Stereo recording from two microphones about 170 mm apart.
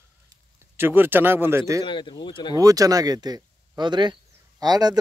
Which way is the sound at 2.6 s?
20° right (ahead or behind).